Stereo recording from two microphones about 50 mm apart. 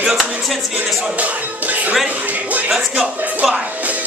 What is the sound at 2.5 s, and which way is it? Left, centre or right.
Music, right.